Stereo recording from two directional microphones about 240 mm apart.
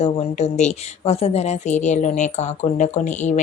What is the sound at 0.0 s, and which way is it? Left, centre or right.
Speech, left.